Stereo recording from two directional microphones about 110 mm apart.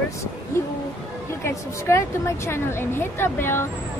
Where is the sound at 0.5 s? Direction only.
25° left (ahead or behind).